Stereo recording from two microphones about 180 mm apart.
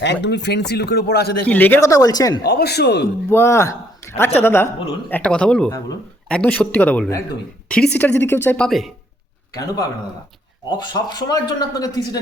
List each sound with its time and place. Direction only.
0.0 s speech: 75° left (ahead or behind)
1.5 s speech: 10° left (ahead or behind)
2.4 s a man's voice: 65° left (ahead or behind)
3.2 s speech: 15° left (ahead or behind)
4.0 s a sound: 15° left (ahead or behind)
4.4 s speech: 10° left (ahead or behind)
8.2 s speech: 10° left (ahead or behind)
9.6 s speech: 20° left (ahead or behind)